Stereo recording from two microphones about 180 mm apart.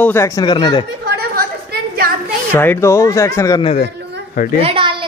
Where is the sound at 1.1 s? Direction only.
60° right (ahead or behind).